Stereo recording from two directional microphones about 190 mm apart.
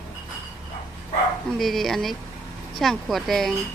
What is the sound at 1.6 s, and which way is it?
Speech, centre (ahead or behind).